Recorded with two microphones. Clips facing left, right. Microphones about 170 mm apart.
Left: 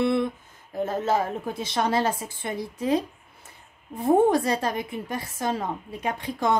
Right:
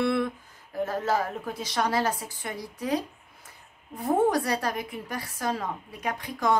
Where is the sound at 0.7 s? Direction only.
20° left (ahead or behind).